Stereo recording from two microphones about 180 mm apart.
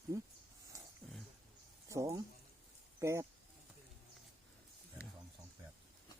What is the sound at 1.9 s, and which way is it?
Speech, 15° right (ahead or behind).